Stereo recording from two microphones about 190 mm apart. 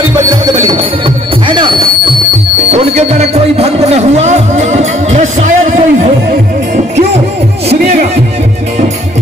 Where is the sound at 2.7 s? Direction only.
35° right (ahead or behind).